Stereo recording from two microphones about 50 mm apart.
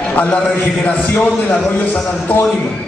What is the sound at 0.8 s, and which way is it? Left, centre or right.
Speech, left.